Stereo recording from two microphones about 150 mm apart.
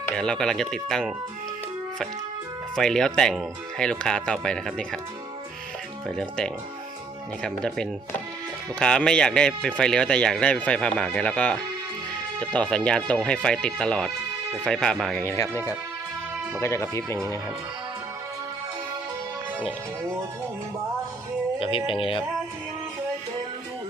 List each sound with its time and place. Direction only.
0.1 s speech: 5° left (ahead or behind)
2.7 s speech: 5° left (ahead or behind)
6.1 s speech: 5° left (ahead or behind)
21.6 s speech: 35° left (ahead or behind)